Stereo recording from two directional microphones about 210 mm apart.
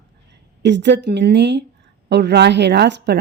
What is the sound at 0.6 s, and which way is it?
A woman's voice, 55° right (ahead or behind).